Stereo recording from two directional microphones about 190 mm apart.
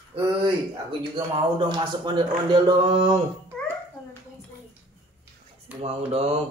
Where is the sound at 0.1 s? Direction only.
30° right (ahead or behind).